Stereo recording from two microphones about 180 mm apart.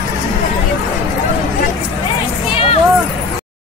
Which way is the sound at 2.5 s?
30° left (ahead or behind).